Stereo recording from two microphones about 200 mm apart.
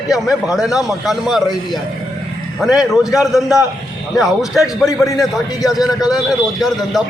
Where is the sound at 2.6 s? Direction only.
Centre (ahead or behind).